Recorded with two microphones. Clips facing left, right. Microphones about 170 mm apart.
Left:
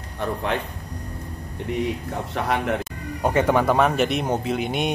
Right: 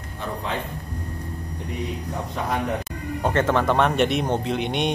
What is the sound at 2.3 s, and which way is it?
Speech, 75° left (ahead or behind).